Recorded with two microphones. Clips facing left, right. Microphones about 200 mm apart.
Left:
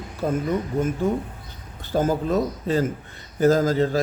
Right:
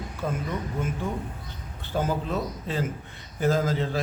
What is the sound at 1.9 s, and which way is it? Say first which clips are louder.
A man's voice: left 6 dB; 45° left (ahead or behind).